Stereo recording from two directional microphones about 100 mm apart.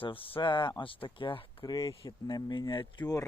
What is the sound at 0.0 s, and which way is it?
Speech, 65° left (ahead or behind).